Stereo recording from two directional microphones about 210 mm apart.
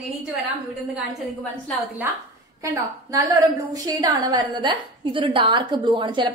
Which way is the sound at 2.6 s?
15° right (ahead or behind).